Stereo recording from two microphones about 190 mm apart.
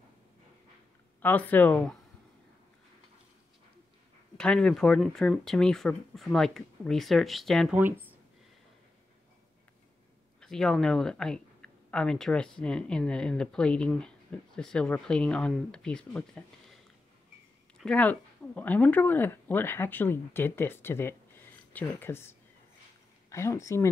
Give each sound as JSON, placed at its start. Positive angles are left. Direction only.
{"t": 1.2, "sound": "speech", "side_deg": 10}
{"t": 4.4, "sound": "speech", "side_deg": 5}
{"t": 7.7, "sound": "speech", "side_deg": -10}
{"t": 10.4, "sound": "speech", "side_deg": 5}
{"t": 23.3, "sound": "speech", "side_deg": 15}